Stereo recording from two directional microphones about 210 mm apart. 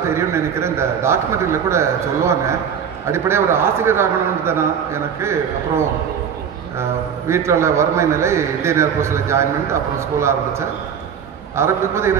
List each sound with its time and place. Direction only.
0.0 s a man's voice: 10° right (ahead or behind)
11.5 s a man's voice: 10° right (ahead or behind)